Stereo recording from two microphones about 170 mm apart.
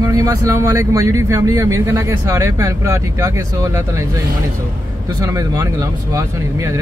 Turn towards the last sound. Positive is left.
turn(degrees=-15)  # may be behind; listen again after turning